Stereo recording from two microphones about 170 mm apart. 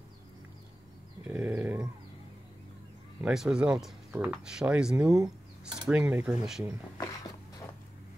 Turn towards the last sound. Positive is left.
turn(degrees=20)  # may be behind; listen again after turning